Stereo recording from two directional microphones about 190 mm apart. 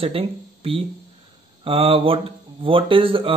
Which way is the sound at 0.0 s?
30° right (ahead or behind).